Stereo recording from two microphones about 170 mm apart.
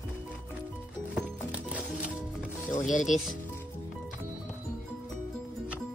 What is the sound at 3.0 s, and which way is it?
Speech, centre (ahead or behind).